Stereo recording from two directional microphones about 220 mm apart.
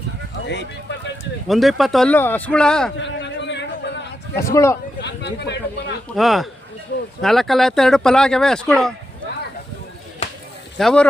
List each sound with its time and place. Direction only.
0.4 s speech: 50° left (ahead or behind)
1.5 s speech: centre (ahead or behind)
3.0 s a sound: 55° left (ahead or behind)
4.5 s speech: 10° left (ahead or behind)
4.9 s speech: 50° left (ahead or behind)
6.1 s speech: centre (ahead or behind)
10.8 s speech: centre (ahead or behind)